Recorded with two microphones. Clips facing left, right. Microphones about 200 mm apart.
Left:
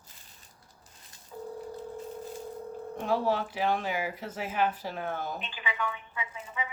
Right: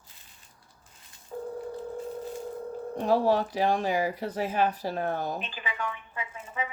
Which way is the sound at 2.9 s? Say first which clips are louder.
Right 5 dB; 40° right (ahead or behind).